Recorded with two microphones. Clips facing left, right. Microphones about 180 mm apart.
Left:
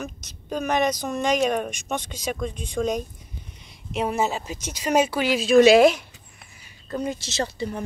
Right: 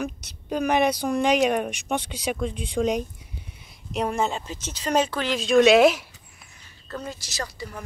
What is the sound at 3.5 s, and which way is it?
Speech, centre (ahead or behind).